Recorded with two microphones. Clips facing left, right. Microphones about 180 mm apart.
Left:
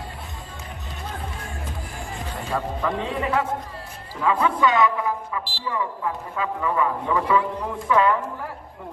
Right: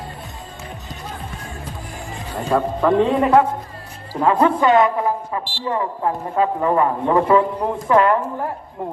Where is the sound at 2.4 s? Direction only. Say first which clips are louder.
Right 9 dB; 50° right (ahead or behind).